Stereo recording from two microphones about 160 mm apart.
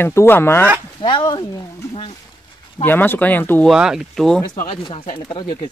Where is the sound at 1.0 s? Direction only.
25° left (ahead or behind).